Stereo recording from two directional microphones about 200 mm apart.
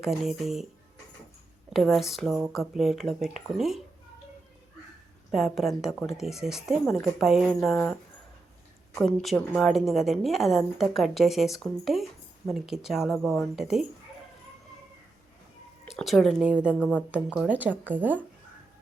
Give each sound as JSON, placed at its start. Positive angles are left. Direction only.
{"t": 0.0, "sound": "speech", "side_deg": 0}
{"t": 1.7, "sound": "speech", "side_deg": 0}
{"t": 5.3, "sound": "speech", "side_deg": 0}
{"t": 9.0, "sound": "speech", "side_deg": 0}
{"t": 15.9, "sound": "speech", "side_deg": 0}